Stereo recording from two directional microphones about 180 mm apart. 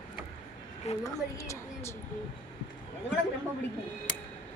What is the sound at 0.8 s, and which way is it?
Speech, 40° left (ahead or behind).